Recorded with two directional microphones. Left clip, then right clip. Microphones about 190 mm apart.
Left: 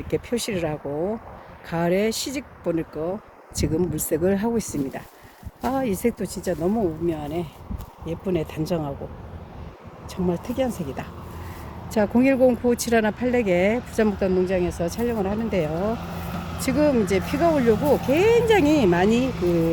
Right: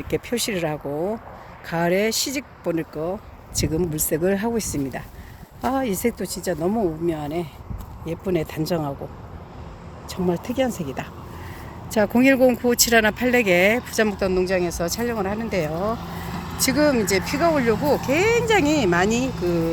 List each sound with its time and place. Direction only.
0.1 s speech: 5° left (ahead or behind)
6.6 s speech: 5° right (ahead or behind)
10.1 s speech: 10° right (ahead or behind)
11.9 s speech: 5° left (ahead or behind); by 16.1 s 25° left (ahead or behind)
16.3 s vehicle: 40° left (ahead or behind)
16.6 s speech: 10° left (ahead or behind)